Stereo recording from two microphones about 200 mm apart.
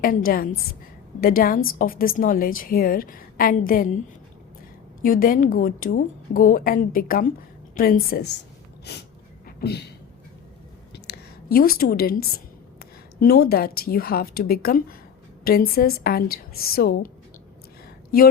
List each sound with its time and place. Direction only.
0.0 s a woman's voice: 45° left (ahead or behind)
5.0 s a woman's voice: 45° left (ahead or behind)
8.9 s a sound: 55° left (ahead or behind)
10.9 s a woman's voice: 55° left (ahead or behind)